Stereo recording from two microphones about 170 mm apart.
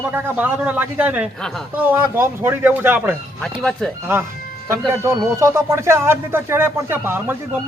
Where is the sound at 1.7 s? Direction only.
10° right (ahead or behind).